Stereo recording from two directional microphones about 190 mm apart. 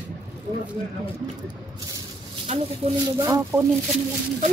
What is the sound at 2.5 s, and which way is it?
Speech, 35° right (ahead or behind).